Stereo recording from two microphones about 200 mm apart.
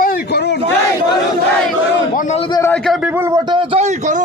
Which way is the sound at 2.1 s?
35° left (ahead or behind).